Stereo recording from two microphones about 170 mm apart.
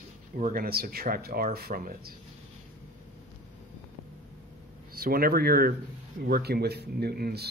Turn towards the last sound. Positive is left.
turn(degrees=-65)  # may be behind; listen again after turning